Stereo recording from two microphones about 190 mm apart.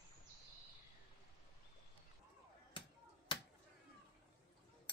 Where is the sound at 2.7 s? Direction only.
25° left (ahead or behind).